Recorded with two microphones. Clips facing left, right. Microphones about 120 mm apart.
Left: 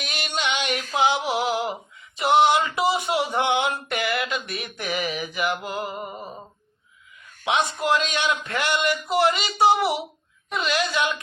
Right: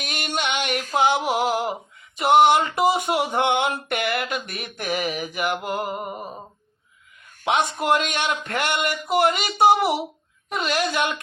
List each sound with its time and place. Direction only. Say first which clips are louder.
0.0 s a sound: right 1 dB; 50° right (ahead or behind)
5.6 s speech: right 3 dB; 55° right (ahead or behind)
7.5 s speech: right 1 dB; 50° right (ahead or behind)